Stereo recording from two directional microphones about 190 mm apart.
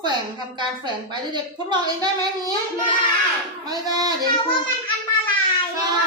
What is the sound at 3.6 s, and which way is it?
Speech, 20° right (ahead or behind).